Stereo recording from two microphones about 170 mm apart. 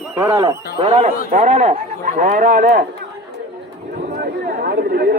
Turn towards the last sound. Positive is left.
turn(degrees=-65)  # may be behind; listen again after turning